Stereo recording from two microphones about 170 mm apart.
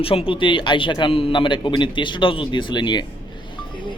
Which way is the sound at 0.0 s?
35° left (ahead or behind).